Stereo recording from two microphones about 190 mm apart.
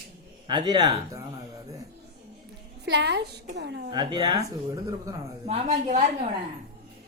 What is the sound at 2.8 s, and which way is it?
A woman's voice, 60° right (ahead or behind).